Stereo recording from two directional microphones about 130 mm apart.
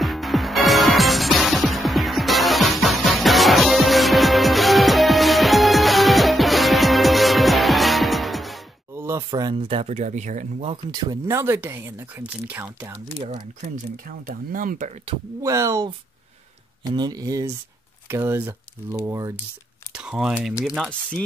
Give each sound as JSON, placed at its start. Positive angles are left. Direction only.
{"t": 0.0, "sound": "music", "side_deg": 0}
{"t": 8.9, "sound": "a sound", "side_deg": -20}
{"t": 9.3, "sound": "speech", "side_deg": -35}
{"t": 10.9, "sound": "speech", "side_deg": -30}
{"t": 11.2, "sound": "speech", "side_deg": -20}
{"t": 14.0, "sound": "speech", "side_deg": -90}
{"t": 15.4, "sound": "speech", "side_deg": -25}
{"t": 19.9, "sound": "speech", "side_deg": -5}